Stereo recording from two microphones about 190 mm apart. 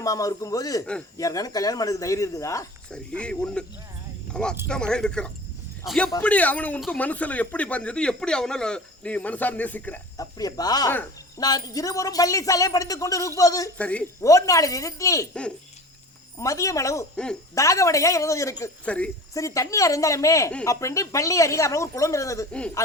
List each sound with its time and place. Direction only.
0.0 s speech: 20° left (ahead or behind)
2.9 s a man's voice: 5° left (ahead or behind)
10.3 s speech: 20° left (ahead or behind)
13.7 s speech: 5° left (ahead or behind)
16.4 s speech: 15° left (ahead or behind)